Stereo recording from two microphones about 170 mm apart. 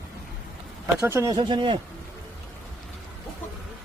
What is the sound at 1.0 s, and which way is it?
Speech, 15° right (ahead or behind).